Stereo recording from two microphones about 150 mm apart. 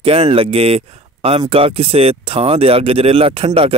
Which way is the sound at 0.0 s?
40° right (ahead or behind).